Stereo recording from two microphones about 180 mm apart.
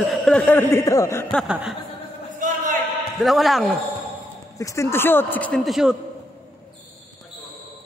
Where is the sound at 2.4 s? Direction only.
45° right (ahead or behind).